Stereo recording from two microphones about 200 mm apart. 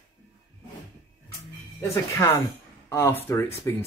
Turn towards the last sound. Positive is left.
turn(degrees=10)  # may be behind; listen again after turning